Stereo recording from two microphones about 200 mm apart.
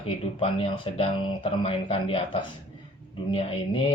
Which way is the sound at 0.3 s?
30° left (ahead or behind).